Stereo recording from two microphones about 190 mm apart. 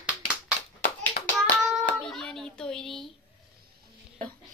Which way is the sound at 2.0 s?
Centre (ahead or behind).